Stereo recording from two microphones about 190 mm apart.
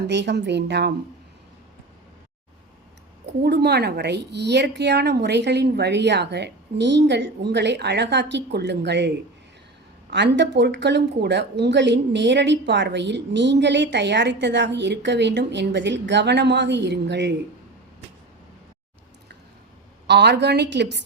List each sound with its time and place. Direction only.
0.1 s speech: 65° right (ahead or behind)
3.4 s speech: 60° right (ahead or behind)
20.1 s speech: 65° right (ahead or behind)